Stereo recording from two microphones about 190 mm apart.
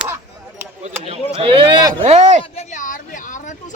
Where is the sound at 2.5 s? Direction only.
40° left (ahead or behind).